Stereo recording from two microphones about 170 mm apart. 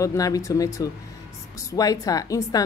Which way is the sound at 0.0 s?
20° left (ahead or behind).